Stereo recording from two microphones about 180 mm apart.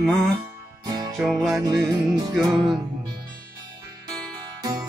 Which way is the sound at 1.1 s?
Centre (ahead or behind).